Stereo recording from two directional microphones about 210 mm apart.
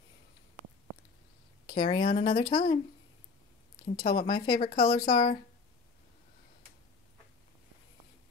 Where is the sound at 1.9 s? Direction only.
25° left (ahead or behind).